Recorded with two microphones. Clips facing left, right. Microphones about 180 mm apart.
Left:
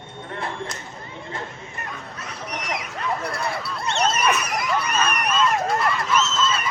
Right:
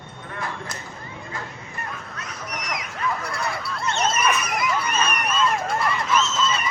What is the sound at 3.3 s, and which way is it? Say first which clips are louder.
Honk: left 1 dB; centre (ahead or behind).